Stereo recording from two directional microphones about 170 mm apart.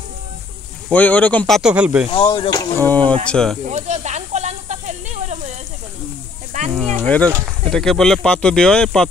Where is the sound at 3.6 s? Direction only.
45° right (ahead or behind).